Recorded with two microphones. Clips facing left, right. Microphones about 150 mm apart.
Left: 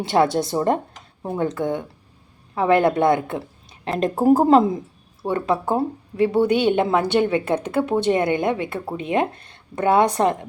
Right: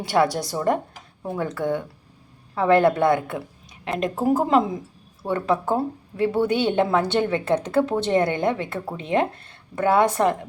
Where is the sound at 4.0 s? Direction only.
35° left (ahead or behind).